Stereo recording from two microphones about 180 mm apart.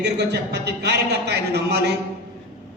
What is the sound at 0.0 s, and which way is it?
Speech, 65° right (ahead or behind).